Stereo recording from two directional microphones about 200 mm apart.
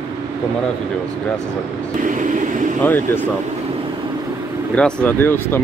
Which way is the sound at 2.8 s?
10° left (ahead or behind).